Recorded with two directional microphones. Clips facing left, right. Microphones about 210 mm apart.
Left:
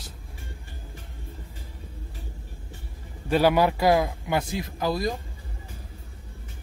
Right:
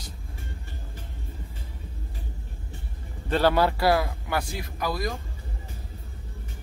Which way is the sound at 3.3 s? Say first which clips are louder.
Left 2 dB; 10° left (ahead or behind).